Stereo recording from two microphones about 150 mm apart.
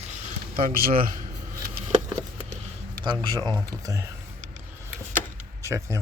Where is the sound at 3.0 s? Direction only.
30° right (ahead or behind).